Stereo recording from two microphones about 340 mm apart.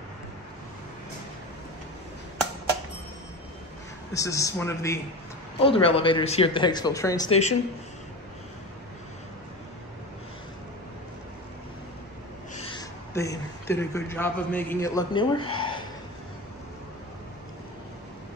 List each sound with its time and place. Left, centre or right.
4.1 s speech: centre
12.6 s a man's voice: centre